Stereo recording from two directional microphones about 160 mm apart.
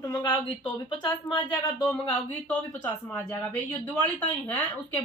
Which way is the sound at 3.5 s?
10° left (ahead or behind).